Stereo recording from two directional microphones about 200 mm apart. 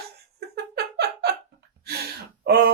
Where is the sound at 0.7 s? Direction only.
55° right (ahead or behind).